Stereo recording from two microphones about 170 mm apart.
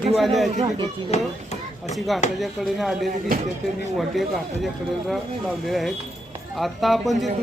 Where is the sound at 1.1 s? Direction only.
40° left (ahead or behind).